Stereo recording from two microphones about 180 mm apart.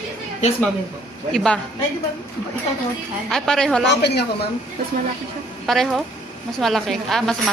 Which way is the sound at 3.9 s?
65° left (ahead or behind).